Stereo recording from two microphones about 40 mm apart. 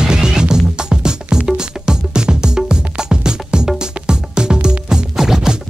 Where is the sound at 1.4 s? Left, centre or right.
Centre.